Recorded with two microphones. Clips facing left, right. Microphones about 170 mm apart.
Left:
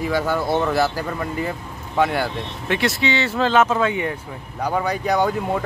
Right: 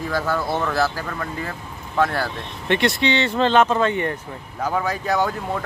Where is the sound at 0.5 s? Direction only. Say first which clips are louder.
Left 3 dB; 20° left (ahead or behind).